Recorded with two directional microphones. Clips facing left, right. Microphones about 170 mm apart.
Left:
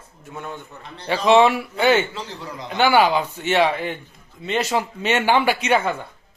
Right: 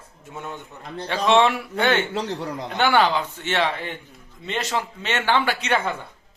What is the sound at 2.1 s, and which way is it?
Speech, 65° right (ahead or behind).